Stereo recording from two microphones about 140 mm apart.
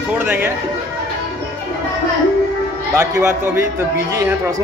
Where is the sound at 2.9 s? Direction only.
20° right (ahead or behind).